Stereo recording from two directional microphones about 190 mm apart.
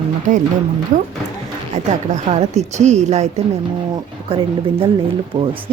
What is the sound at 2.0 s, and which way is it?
Speech, 35° right (ahead or behind).